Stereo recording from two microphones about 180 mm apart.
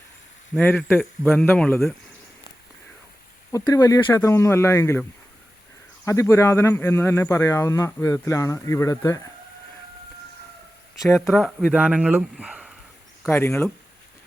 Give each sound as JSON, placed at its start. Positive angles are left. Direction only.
{"t": 0.5, "sound": "speech", "side_deg": 5}
{"t": 3.6, "sound": "speech", "side_deg": 15}
{"t": 6.1, "sound": "speech", "side_deg": 15}
{"t": 11.3, "sound": "speech", "side_deg": 0}
{"t": 13.2, "sound": "speech", "side_deg": 15}